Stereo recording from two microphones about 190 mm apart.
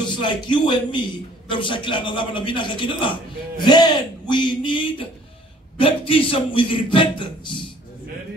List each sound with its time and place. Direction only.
0.0 s a man's voice: 25° left (ahead or behind)